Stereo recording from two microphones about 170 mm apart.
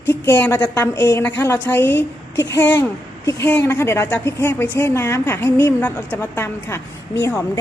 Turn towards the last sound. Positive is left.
turn(degrees=10)  # may be behind; listen again after turning